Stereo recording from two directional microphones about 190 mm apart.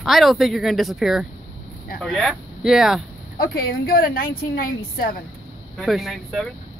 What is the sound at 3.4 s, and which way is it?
A woman's voice, 50° left (ahead or behind).